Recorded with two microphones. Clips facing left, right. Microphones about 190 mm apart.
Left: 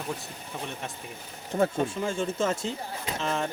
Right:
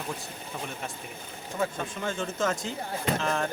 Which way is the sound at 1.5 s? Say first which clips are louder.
Left 5 dB; 40° left (ahead or behind).